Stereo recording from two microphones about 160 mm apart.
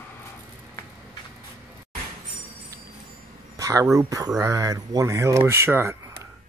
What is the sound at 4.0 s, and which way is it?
Speech, 20° right (ahead or behind).